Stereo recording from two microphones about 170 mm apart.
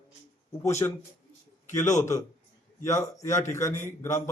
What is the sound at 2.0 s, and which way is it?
A man's voice, 20° left (ahead or behind).